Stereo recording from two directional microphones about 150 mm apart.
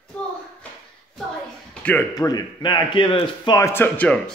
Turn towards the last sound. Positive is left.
turn(degrees=10)  # may be behind; listen again after turning